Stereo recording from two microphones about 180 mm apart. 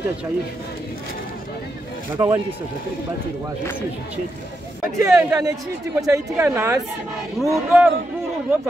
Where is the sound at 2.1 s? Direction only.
15° right (ahead or behind).